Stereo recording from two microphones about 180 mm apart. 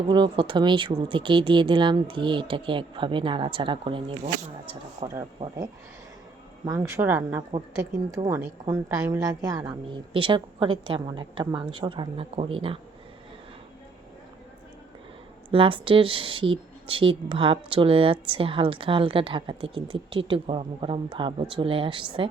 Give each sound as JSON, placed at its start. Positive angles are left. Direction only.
{"t": 0.1, "sound": "speech", "side_deg": -25}
{"t": 5.0, "sound": "speech", "side_deg": -30}
{"t": 6.7, "sound": "speech", "side_deg": -15}
{"t": 8.2, "sound": "speech", "side_deg": -35}
{"t": 9.0, "sound": "speech", "side_deg": -5}
{"t": 9.2, "sound": "speech", "side_deg": -20}
{"t": 15.5, "sound": "speech", "side_deg": -30}